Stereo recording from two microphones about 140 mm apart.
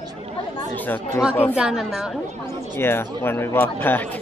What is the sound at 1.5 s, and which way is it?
Speech, 5° right (ahead or behind).